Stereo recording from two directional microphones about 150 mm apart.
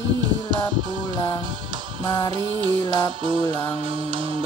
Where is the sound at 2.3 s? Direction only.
35° right (ahead or behind).